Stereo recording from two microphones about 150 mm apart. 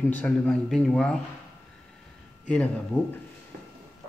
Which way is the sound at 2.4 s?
5° left (ahead or behind).